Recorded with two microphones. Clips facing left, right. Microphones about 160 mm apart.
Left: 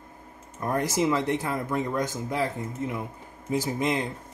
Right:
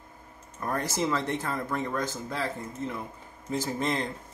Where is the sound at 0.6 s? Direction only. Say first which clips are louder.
Left 4 dB; 15° left (ahead or behind).